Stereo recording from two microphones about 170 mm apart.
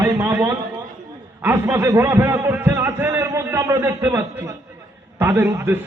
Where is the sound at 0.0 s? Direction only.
15° right (ahead or behind).